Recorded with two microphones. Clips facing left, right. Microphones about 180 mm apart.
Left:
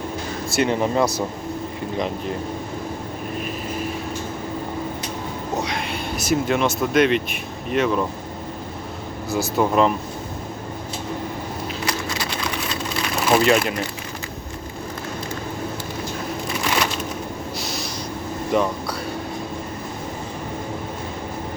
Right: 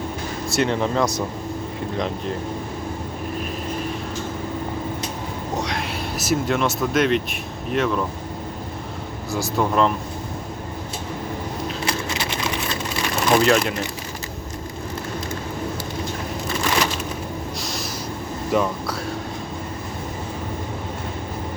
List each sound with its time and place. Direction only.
0.5 s speech: 5° left (ahead or behind)
5.6 s speech: centre (ahead or behind)
9.3 s speech: centre (ahead or behind)
11.9 s a sound: 25° right (ahead or behind)
13.1 s speech: 5° left (ahead or behind)
17.6 s a sound: centre (ahead or behind)
18.5 s speech: centre (ahead or behind)